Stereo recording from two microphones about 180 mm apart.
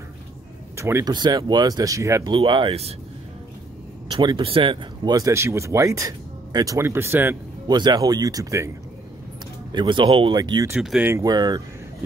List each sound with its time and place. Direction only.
0.7 s speech: 15° right (ahead or behind)
4.1 s speech: 25° right (ahead or behind)
7.7 s speech: 25° right (ahead or behind)
10.8 s speech: centre (ahead or behind)
11.1 s speech: 20° right (ahead or behind)